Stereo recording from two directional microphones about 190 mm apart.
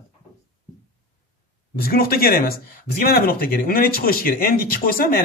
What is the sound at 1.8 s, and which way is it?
Speech, 50° left (ahead or behind).